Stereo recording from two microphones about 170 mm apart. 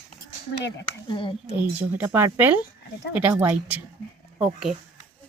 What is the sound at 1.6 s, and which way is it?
A woman's voice, 10° right (ahead or behind).